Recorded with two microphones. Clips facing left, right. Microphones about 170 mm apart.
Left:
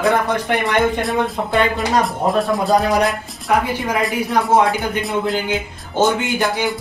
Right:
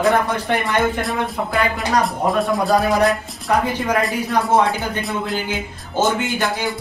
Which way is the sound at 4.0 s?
Centre (ahead or behind).